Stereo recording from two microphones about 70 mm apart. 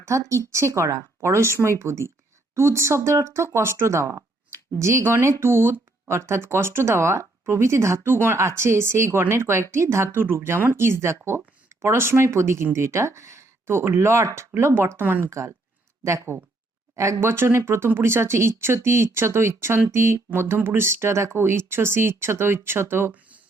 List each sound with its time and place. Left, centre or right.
0.0 s speech: right
15.3 s speech: right